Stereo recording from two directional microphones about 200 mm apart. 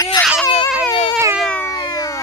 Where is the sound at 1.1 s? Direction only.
10° right (ahead or behind).